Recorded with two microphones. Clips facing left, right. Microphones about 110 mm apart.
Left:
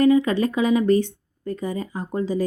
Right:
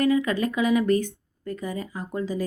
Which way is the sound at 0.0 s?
30° left (ahead or behind).